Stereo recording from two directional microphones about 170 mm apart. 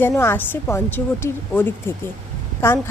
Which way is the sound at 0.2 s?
10° left (ahead or behind).